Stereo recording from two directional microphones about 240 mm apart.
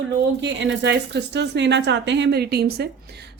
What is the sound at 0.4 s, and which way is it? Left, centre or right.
A woman's voice, right.